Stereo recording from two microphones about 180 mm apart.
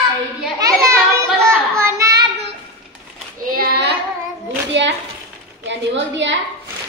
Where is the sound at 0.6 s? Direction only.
20° right (ahead or behind).